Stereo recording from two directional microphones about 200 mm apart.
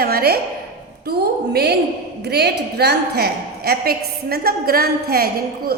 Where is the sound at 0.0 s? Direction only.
50° right (ahead or behind).